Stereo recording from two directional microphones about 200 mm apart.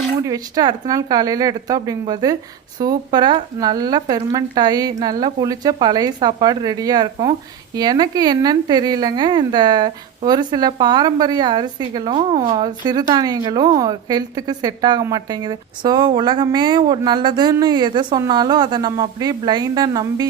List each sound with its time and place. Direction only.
0.3 s a woman's voice: 20° right (ahead or behind)